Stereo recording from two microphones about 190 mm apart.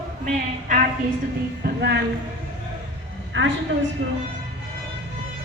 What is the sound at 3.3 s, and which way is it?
Speech, 80° right.